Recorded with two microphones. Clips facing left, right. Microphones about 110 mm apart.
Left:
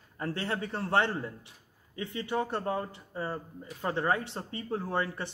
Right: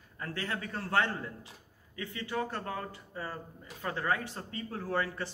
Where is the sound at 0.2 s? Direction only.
30° left (ahead or behind).